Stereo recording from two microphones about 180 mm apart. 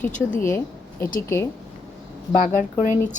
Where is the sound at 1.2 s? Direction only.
15° left (ahead or behind).